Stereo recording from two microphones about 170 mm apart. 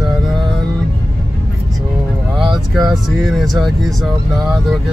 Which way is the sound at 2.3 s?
Centre (ahead or behind).